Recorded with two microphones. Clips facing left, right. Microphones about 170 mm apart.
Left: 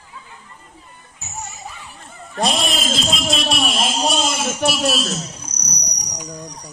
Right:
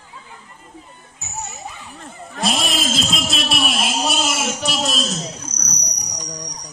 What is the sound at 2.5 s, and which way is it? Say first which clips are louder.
A man's voice: right 3 dB; centre (ahead or behind).